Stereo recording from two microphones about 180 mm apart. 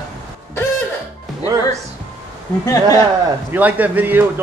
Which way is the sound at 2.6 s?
20° left (ahead or behind).